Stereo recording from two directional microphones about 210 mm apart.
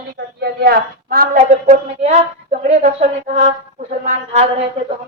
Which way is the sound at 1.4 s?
30° right (ahead or behind).